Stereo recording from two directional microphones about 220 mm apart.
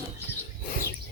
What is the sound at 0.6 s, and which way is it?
Chirp, 40° left (ahead or behind).